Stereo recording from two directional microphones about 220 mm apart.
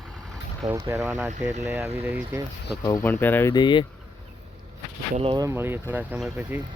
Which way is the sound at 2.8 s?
15° left (ahead or behind).